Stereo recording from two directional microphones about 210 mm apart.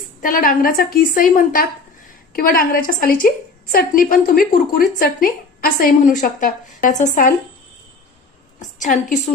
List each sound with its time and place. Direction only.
0.2 s a woman's voice: 40° left (ahead or behind)
8.5 s a woman's voice: 35° left (ahead or behind)